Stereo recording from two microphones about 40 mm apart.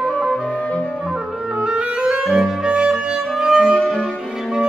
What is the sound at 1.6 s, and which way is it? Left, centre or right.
Clarinet, right.